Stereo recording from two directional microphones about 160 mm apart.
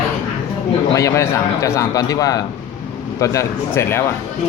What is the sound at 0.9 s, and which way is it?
A man's voice, 20° left (ahead or behind).